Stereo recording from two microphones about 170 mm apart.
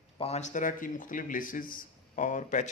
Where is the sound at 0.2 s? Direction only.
40° left (ahead or behind).